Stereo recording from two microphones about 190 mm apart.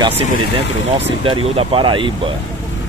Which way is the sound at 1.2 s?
30° right (ahead or behind).